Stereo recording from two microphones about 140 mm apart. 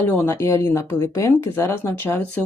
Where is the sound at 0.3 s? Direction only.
20° left (ahead or behind).